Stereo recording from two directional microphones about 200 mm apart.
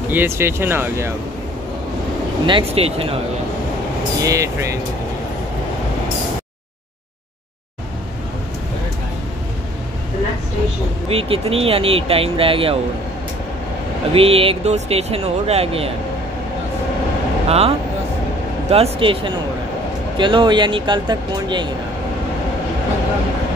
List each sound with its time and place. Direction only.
0.1 s speech: 10° right (ahead or behind)
2.4 s speech: 25° right (ahead or behind)
4.2 s speech: 15° right (ahead or behind)
11.1 s speech: 30° right (ahead or behind)
14.1 s speech: 30° right (ahead or behind)
17.5 s speech: 30° right (ahead or behind)